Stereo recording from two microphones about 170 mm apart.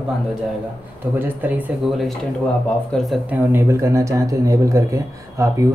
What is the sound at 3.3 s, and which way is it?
Speech, 15° right (ahead or behind).